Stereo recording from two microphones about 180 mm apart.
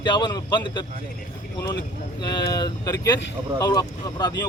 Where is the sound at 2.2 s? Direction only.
20° left (ahead or behind).